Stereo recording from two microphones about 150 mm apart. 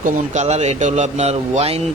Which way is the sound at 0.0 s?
50° right (ahead or behind).